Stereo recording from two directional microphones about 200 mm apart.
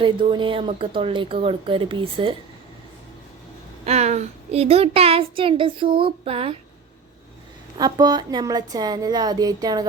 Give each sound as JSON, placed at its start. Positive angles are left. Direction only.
{"t": 0.0, "sound": "speech", "side_deg": -25}
{"t": 3.8, "sound": "speech", "side_deg": -35}
{"t": 7.8, "sound": "speech", "side_deg": -20}